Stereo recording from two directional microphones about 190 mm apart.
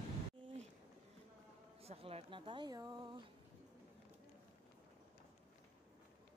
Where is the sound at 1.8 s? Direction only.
30° right (ahead or behind).